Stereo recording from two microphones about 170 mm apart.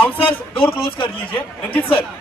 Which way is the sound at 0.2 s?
30° left (ahead or behind).